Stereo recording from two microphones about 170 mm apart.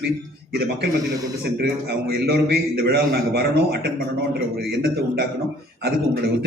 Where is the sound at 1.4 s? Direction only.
70° right (ahead or behind).